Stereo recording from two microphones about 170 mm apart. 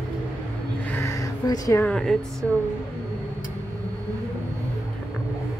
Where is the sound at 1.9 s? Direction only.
5° left (ahead or behind).